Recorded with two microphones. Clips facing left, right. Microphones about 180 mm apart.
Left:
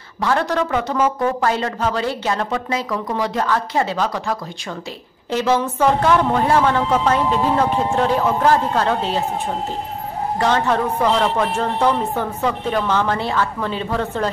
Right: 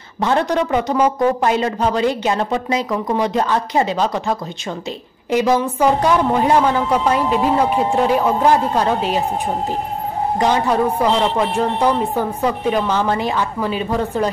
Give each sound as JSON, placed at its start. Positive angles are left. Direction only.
{"t": 0.2, "sound": "a man's voice", "side_deg": -20}
{"t": 10.4, "sound": "a woman's voice", "side_deg": -15}